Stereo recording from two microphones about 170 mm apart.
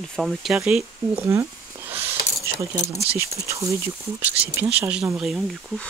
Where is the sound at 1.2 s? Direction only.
15° right (ahead or behind).